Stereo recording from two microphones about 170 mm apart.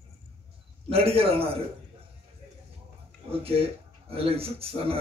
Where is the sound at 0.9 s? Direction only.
35° right (ahead or behind).